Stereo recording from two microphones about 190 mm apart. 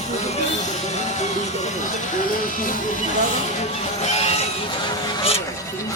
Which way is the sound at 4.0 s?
35° left (ahead or behind).